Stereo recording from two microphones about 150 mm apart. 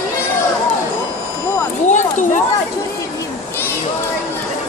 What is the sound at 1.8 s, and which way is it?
Run, 55° left (ahead or behind).